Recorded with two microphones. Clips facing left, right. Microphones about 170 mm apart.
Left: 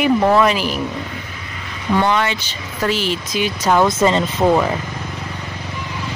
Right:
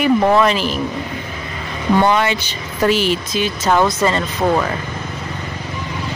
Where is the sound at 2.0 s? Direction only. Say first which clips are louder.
Right 2 dB; 10° right (ahead or behind).